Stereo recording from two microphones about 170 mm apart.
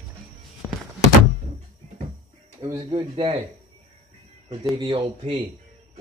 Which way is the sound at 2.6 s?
25° right (ahead or behind).